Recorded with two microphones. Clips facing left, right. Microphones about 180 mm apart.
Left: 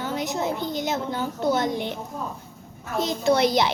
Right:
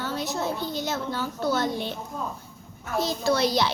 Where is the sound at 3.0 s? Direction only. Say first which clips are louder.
Left 3 dB; 20° left (ahead or behind).